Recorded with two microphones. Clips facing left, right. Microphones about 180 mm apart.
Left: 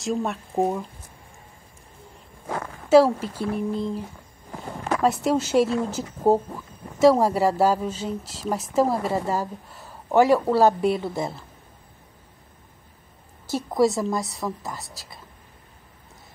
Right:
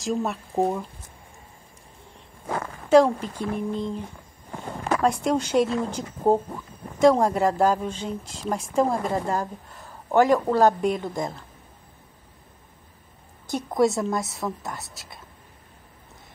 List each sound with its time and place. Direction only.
0.0 s a woman's voice: centre (ahead or behind)
2.9 s a woman's voice: 5° left (ahead or behind)
5.0 s a woman's voice: 5° left (ahead or behind)
13.7 s a woman's voice: centre (ahead or behind)